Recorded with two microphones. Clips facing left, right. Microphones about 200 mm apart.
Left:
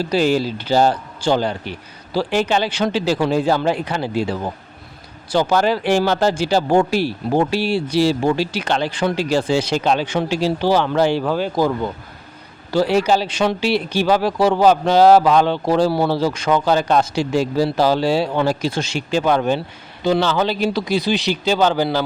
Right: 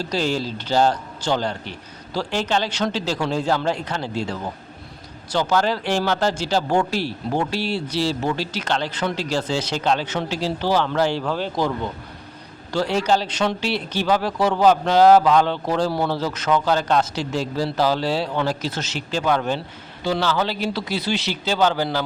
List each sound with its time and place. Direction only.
0.0 s speech: 10° left (ahead or behind)